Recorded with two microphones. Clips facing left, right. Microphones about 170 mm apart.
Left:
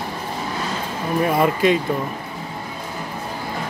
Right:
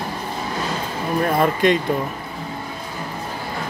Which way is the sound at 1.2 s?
5° left (ahead or behind).